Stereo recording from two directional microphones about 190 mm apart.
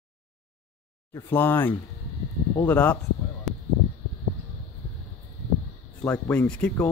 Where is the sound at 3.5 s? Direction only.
Centre (ahead or behind).